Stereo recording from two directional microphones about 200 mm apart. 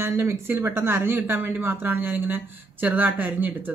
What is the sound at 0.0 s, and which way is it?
Speech, 10° right (ahead or behind).